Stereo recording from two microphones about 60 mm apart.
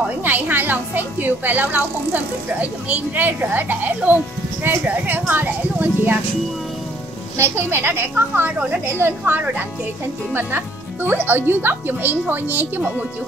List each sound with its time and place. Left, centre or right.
0.2 s a woman's voice: right
7.3 s a woman's voice: right